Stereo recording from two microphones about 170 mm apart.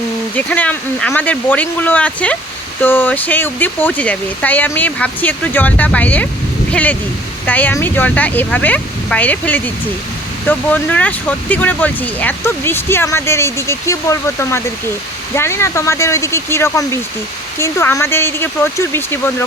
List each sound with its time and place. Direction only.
0.3 s speech: 10° left (ahead or behind)